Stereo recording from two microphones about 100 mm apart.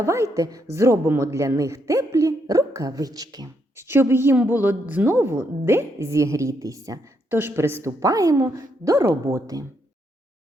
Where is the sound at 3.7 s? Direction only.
25° right (ahead or behind).